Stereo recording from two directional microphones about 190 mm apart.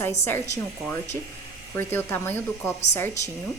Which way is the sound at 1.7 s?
10° left (ahead or behind).